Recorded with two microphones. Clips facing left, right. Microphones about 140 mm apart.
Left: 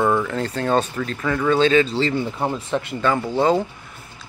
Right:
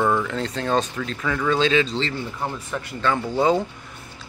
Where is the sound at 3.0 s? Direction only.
5° left (ahead or behind).